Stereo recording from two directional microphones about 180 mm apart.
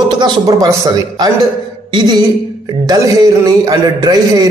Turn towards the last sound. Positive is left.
turn(degrees=-20)  # may be behind; listen again after turning